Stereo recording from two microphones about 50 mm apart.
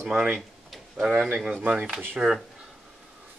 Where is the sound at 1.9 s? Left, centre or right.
Right.